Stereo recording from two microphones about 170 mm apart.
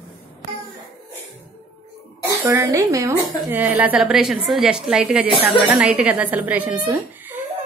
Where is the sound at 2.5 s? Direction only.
15° right (ahead or behind).